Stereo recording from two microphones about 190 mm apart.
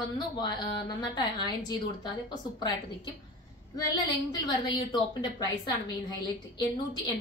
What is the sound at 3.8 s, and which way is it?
A woman's voice, 20° left (ahead or behind).